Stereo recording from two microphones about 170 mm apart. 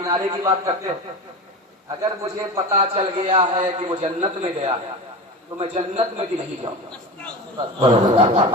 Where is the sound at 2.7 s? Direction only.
35° right (ahead or behind).